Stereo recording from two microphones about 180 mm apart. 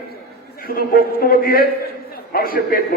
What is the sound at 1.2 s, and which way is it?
A man's voice, 55° left (ahead or behind).